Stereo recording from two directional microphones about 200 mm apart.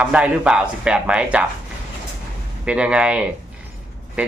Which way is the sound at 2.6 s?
5° right (ahead or behind).